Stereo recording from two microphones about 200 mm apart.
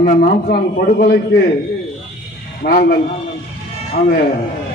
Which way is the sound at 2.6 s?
40° left (ahead or behind).